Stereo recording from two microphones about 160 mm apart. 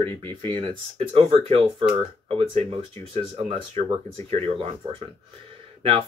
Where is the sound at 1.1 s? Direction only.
35° right (ahead or behind).